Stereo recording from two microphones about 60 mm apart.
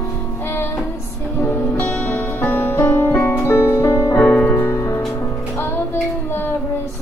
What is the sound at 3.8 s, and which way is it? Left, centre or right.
Music, left.